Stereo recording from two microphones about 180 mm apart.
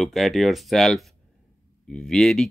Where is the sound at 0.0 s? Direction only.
Centre (ahead or behind).